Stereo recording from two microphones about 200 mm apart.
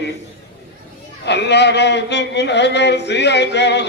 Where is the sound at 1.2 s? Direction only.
60° left (ahead or behind).